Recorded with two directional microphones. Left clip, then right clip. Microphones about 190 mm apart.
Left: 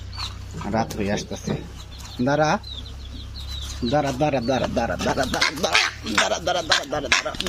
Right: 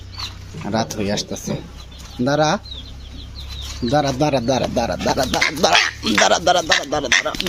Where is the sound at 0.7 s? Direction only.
15° right (ahead or behind).